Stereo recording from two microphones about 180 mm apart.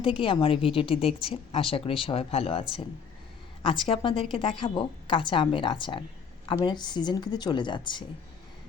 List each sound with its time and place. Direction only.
0.0 s a woman's voice: 30° left (ahead or behind)